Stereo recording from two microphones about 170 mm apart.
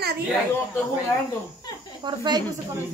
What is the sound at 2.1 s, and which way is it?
Speech, 25° right (ahead or behind).